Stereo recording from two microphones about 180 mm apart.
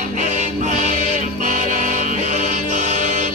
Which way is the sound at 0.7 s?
40° right (ahead or behind).